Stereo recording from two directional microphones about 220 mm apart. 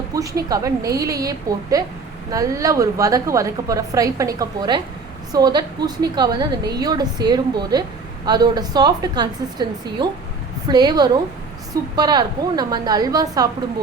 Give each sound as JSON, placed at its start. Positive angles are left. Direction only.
{"t": 0.1, "sound": "a woman's voice", "side_deg": -15}